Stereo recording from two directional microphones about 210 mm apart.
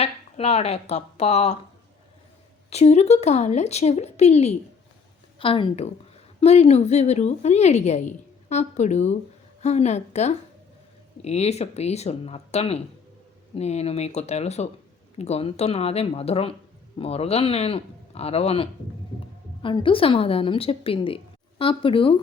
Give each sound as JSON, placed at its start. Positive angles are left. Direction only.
{"t": 0.0, "sound": "a woman's voice", "side_deg": 30}
{"t": 2.6, "sound": "a woman's voice", "side_deg": 30}